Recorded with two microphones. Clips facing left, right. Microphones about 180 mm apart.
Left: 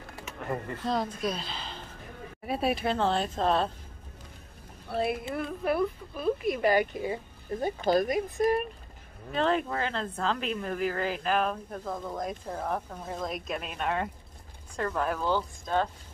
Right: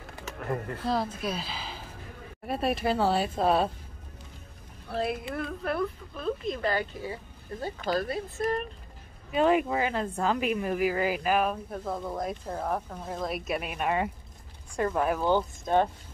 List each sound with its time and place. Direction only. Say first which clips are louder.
0.5 s speech: right 1 dB; centre (ahead or behind)
4.8 s speech: left 1 dB; centre (ahead or behind)
9.3 s speech: right 4 dB; 10° right (ahead or behind)